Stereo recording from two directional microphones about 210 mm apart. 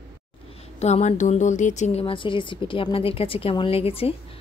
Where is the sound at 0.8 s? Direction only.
30° left (ahead or behind).